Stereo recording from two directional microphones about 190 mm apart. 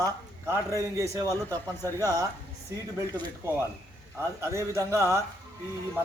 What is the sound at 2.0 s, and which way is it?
Speech, 15° right (ahead or behind).